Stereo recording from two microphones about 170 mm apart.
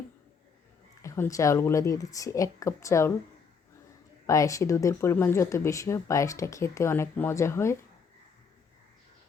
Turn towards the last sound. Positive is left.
turn(degrees=15)  # may be behind; listen again after turning